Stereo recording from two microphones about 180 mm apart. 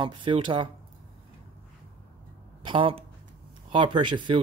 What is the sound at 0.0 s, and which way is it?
Speech, 25° right (ahead or behind).